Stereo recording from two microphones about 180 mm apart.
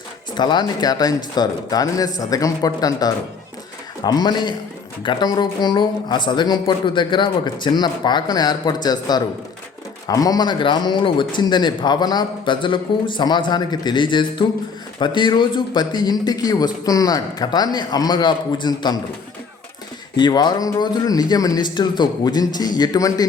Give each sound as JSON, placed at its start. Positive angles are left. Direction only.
{"t": 0.3, "sound": "a man's voice", "side_deg": 25}
{"t": 20.1, "sound": "a man's voice", "side_deg": 25}